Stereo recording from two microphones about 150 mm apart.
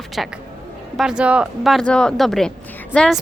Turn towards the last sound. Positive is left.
turn(degrees=10)  # may be behind; listen again after turning